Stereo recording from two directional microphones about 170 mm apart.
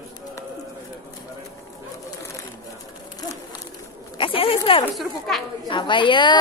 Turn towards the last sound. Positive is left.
turn(degrees=30)  # may be behind; listen again after turning